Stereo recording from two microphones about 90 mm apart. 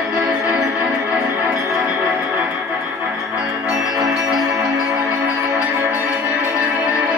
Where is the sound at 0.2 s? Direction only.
5° right (ahead or behind).